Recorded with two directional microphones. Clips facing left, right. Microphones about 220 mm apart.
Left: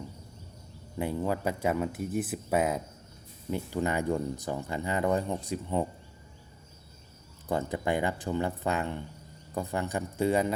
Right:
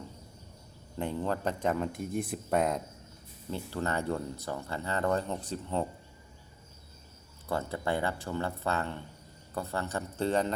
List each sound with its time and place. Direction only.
0.9 s speech: 10° left (ahead or behind)
7.4 s speech: 15° left (ahead or behind)